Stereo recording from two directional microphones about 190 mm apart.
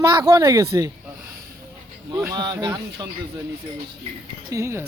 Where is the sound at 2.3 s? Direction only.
20° right (ahead or behind).